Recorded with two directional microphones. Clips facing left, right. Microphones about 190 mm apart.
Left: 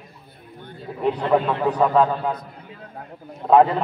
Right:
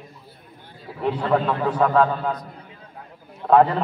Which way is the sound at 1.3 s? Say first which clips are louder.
Left 1 dB; 15° left (ahead or behind).